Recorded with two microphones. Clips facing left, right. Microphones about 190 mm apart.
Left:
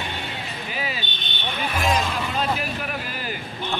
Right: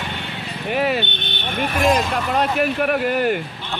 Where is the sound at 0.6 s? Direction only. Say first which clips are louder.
Right 13 dB; 65° right (ahead or behind).